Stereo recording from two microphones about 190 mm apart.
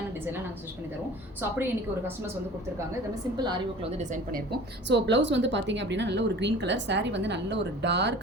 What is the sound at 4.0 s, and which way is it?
Speech, 40° right (ahead or behind).